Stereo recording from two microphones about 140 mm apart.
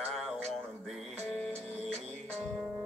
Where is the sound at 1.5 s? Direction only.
50° right (ahead or behind).